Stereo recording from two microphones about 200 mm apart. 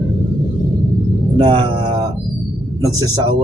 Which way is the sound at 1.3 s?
25° right (ahead or behind).